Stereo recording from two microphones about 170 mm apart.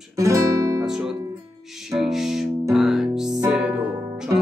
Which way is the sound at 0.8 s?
5° right (ahead or behind).